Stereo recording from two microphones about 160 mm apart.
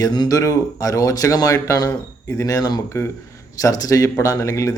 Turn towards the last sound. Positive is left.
turn(degrees=20)  # may be behind; listen again after turning